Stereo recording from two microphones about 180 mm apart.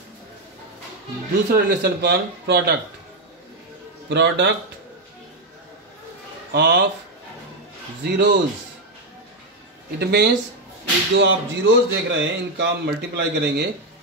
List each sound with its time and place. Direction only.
1.5 s speech: 55° right (ahead or behind)
4.1 s speech: 75° right (ahead or behind)
6.5 s speech: 65° right (ahead or behind)
8.0 s speech: 70° right (ahead or behind)
9.9 s speech: 60° right (ahead or behind)
11.1 s speech: 90° right; by 13.7 s 70° right (ahead or behind)